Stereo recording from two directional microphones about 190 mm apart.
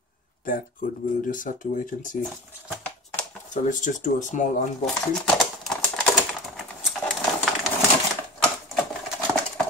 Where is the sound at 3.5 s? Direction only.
40° left (ahead or behind).